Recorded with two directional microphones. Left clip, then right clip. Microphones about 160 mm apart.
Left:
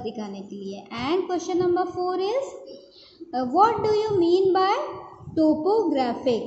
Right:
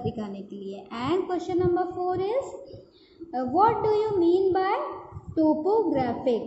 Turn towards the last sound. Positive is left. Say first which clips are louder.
# left 2 dB
turn(degrees=20)  # may be behind; listen again after turning